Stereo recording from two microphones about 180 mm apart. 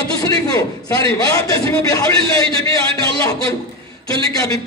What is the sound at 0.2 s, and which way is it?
A man's voice, 20° left (ahead or behind).